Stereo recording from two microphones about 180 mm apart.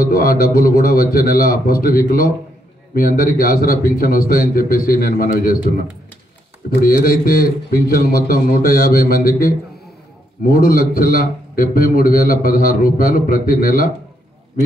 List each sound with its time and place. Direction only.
0.0 s a man's voice: 55° left (ahead or behind)